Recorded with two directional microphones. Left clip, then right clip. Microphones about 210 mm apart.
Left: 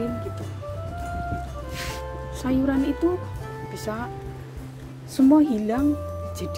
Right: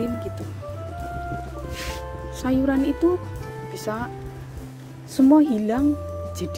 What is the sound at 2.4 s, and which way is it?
Speech, 20° right (ahead or behind).